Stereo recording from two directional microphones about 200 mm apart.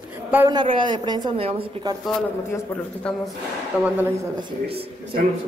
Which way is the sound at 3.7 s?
5° right (ahead or behind).